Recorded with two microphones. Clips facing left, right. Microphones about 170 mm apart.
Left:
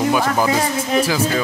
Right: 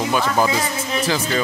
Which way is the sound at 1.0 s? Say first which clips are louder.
Even; 10° left (ahead or behind).